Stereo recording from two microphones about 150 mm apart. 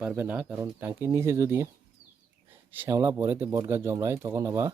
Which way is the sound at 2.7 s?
15° right (ahead or behind).